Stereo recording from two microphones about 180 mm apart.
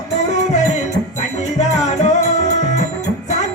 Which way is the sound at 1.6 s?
40° left (ahead or behind).